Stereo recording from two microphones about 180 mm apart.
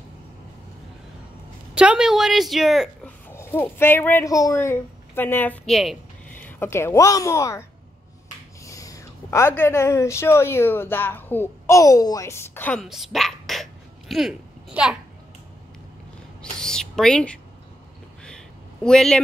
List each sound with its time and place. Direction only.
1.8 s a woman's voice: 5° right (ahead or behind)
3.3 s speech: 10° left (ahead or behind)
6.4 s a woman's voice: 15° left (ahead or behind)
8.6 s speech: 20° left (ahead or behind)
12.8 s dog: centre (ahead or behind)
16.5 s a sound: 5° left (ahead or behind)